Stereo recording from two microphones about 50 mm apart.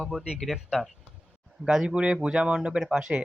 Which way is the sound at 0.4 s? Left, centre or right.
Centre.